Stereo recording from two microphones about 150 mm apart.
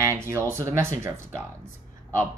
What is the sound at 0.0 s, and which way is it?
Speech, 15° right (ahead or behind).